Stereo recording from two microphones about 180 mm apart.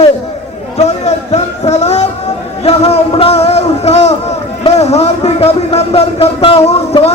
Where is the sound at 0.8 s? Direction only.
35° left (ahead or behind).